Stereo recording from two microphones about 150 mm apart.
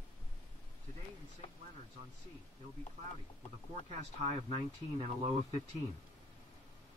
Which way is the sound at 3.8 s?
50° right (ahead or behind).